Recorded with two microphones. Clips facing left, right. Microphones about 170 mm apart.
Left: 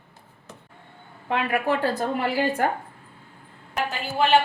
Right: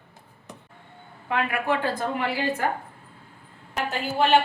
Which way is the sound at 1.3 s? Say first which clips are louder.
Left 2 dB; 40° left (ahead or behind).